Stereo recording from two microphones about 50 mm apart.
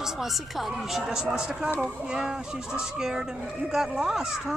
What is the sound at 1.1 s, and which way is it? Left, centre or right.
Speech, centre.